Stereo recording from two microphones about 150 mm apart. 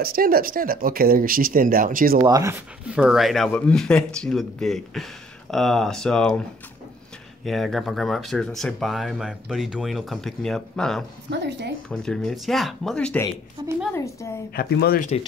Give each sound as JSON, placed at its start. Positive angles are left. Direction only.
{"t": 0.0, "sound": "speech", "side_deg": -80}
{"t": 2.2, "sound": "speech", "side_deg": -25}
{"t": 2.9, "sound": "speech", "side_deg": -5}
{"t": 7.4, "sound": "speech", "side_deg": 0}
{"t": 13.6, "sound": "speech", "side_deg": -25}
{"t": 13.9, "sound": "a woman's voice", "side_deg": 20}
{"t": 14.5, "sound": "speech", "side_deg": 90}